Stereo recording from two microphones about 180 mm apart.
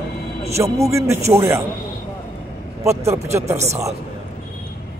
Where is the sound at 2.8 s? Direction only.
15° right (ahead or behind).